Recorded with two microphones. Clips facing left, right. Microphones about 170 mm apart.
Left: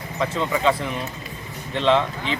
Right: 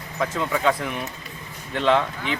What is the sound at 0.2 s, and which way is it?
Speech, 5° right (ahead or behind).